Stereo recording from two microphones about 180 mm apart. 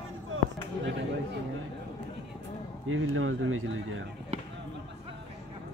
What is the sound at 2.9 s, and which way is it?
Speech, 90° right.